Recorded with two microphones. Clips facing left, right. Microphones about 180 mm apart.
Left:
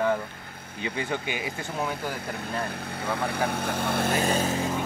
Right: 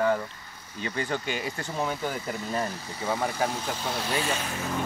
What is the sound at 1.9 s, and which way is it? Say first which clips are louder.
Speech: right 1 dB; 60° left (ahead or behind).